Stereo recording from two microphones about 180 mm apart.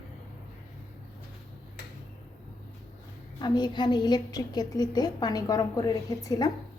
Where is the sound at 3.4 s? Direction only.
25° left (ahead or behind).